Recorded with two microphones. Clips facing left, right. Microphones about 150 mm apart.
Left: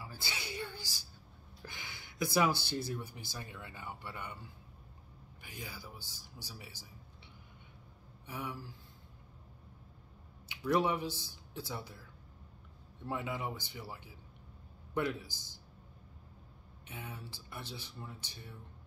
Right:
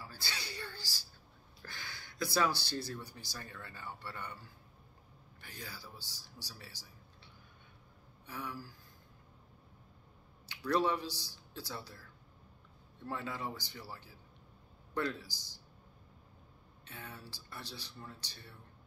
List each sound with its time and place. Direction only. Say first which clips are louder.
0.0 s a sound: left 1 dB; 20° left (ahead or behind)
1.6 s speech: even; 20° left (ahead or behind)
8.3 s speech: left 1 dB; 15° left (ahead or behind)
10.5 s speech: left 1 dB; 20° left (ahead or behind)
16.8 s speech: left 2 dB; 20° left (ahead or behind)